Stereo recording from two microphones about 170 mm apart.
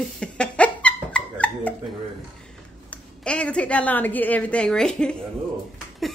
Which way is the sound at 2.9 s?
5° left (ahead or behind).